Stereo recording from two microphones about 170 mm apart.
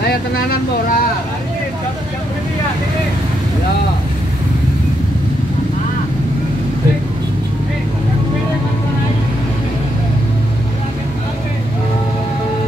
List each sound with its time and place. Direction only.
0.1 s speech: 60° left (ahead or behind)